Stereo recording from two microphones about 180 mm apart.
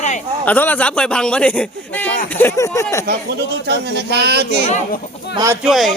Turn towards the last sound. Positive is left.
turn(degrees=0)  # may be behind; listen again after turning